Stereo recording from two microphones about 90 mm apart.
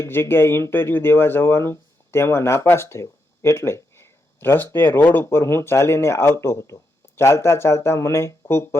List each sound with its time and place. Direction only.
0.0 s speech: 25° left (ahead or behind)